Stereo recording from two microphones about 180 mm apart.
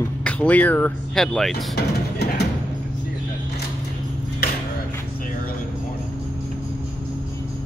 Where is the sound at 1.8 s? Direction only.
65° left (ahead or behind).